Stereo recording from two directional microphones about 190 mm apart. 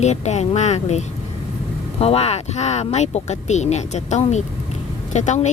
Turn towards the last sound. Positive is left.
turn(degrees=40)  # may be behind; listen again after turning